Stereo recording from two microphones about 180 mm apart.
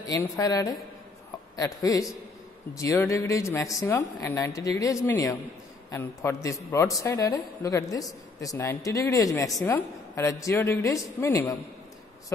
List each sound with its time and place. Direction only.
0.0 s a woman's voice: 20° left (ahead or behind)